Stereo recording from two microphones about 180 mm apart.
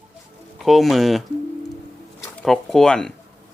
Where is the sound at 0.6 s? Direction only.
Centre (ahead or behind).